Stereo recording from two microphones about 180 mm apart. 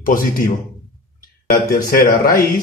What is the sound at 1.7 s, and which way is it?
Speech, 50° left (ahead or behind).